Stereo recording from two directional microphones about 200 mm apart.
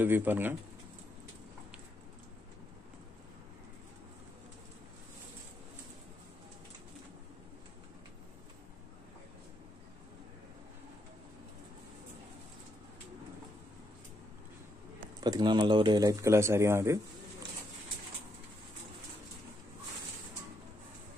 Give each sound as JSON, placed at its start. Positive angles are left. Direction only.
{"t": 0.0, "sound": "speech", "side_deg": -10}
{"t": 15.1, "sound": "speech", "side_deg": -20}